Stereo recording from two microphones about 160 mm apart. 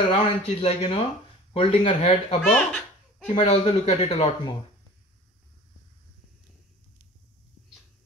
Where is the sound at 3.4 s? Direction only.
30° left (ahead or behind).